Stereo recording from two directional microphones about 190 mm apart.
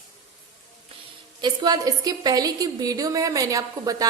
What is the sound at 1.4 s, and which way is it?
A woman's voice, 20° right (ahead or behind).